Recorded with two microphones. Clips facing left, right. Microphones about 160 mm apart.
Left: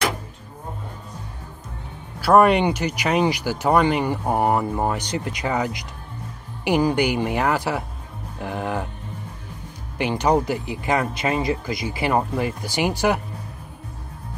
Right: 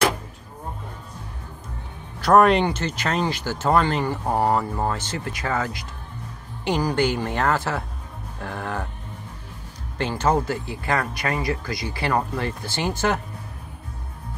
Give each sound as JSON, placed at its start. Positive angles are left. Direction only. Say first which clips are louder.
{"t": 2.1, "sound": "speech", "louder": "left 1 dB", "side_deg": 5}
{"t": 9.9, "sound": "speech", "louder": "left 2 dB", "side_deg": 15}